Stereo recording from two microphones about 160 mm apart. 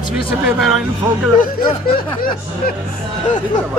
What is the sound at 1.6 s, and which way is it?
Speech, 65° left (ahead or behind).